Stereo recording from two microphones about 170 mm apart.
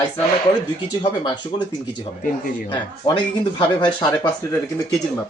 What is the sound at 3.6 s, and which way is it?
Speech, 25° left (ahead or behind).